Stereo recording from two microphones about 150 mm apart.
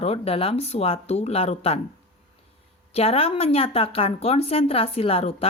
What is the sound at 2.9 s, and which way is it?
Speech, 40° left (ahead or behind).